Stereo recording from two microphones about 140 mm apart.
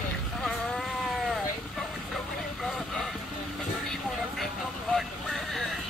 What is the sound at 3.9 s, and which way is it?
Vehicle, centre (ahead or behind).